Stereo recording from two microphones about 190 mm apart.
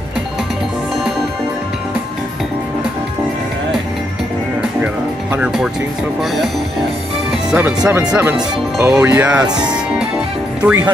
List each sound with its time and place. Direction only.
5.3 s speech: 5° right (ahead or behind)
7.5 s speech: 10° right (ahead or behind)